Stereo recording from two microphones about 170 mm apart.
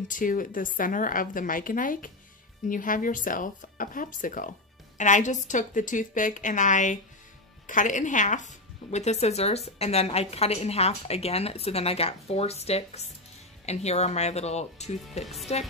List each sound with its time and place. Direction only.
0.1 s a woman's voice: 50° left (ahead or behind)